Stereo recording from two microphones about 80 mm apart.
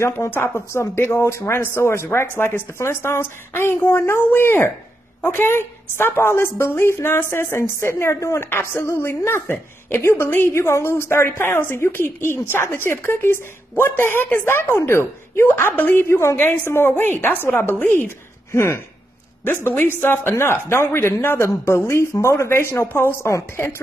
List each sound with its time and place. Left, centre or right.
0.0 s a woman's voice: left